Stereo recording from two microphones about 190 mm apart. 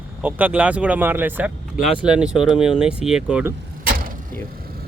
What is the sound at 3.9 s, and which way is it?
Vehicle, 50° right (ahead or behind).